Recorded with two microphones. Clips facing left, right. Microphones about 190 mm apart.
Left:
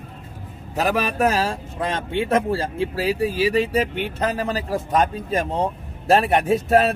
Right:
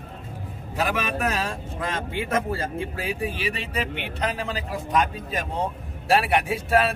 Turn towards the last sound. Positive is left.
turn(degrees=40)  # may be behind; listen again after turning